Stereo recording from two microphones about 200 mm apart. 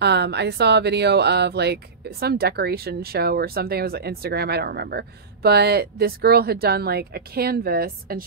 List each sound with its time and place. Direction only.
0.0 s speech: 55° right (ahead or behind)